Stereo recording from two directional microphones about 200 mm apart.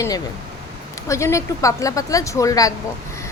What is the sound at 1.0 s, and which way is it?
Speech, 15° left (ahead or behind).